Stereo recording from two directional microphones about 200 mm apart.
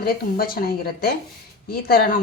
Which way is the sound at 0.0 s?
50° left (ahead or behind).